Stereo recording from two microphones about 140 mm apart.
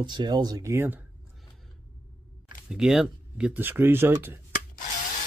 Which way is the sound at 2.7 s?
5° right (ahead or behind).